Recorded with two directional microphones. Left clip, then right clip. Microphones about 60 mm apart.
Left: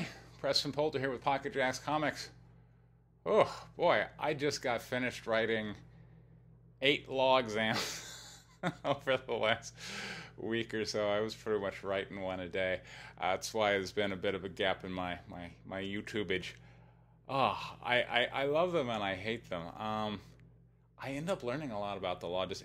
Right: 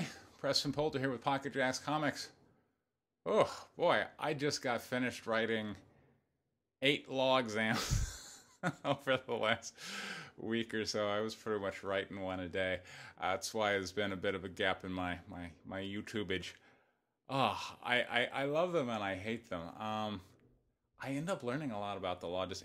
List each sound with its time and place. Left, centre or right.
0.0 s a sound: centre
0.5 s speech: centre
1.3 s speech: left
11.0 s speech: left
11.6 s speech: centre
11.9 s speech: left
14.2 s speech: left
15.7 s speech: left
17.6 s a man's voice: left
21.0 s speech: left